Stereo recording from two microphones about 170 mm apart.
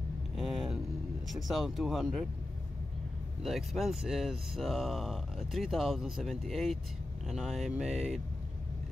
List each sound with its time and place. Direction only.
0.4 s a sound: centre (ahead or behind)
1.3 s speech: centre (ahead or behind)
3.4 s speech: centre (ahead or behind)